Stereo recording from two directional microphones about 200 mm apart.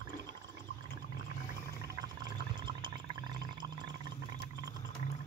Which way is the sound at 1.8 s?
20° right (ahead or behind).